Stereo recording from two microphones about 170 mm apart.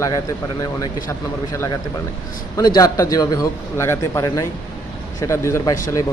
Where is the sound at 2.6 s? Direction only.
20° left (ahead or behind).